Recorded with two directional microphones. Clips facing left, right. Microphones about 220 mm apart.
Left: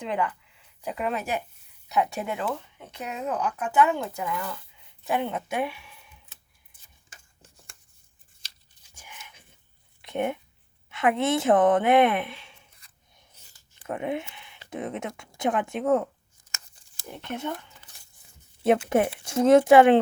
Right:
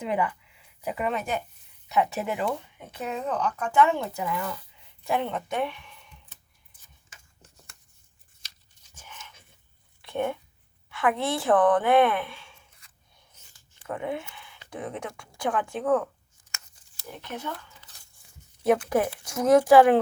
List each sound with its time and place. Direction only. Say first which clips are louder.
0.0 s speech: right 1 dB; 5° right (ahead or behind)
9.0 s dog: right 1 dB; 10° left (ahead or behind)
10.0 s a sound: left 1 dB; 20° left (ahead or behind)
10.8 s speech: left 2 dB; 20° left (ahead or behind)
13.8 s speech: left 2 dB; 20° left (ahead or behind)
17.2 s speech: left 4 dB; 25° left (ahead or behind)